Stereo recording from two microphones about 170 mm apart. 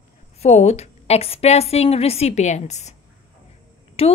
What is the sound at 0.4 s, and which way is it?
A woman's voice, 40° left (ahead or behind).